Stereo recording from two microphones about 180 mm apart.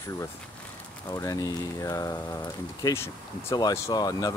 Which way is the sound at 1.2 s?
20° left (ahead or behind).